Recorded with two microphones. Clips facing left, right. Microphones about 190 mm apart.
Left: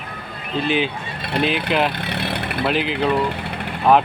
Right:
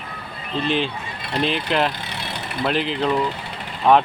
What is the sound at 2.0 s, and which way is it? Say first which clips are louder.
Vehicle: left 6 dB; 60° left (ahead or behind).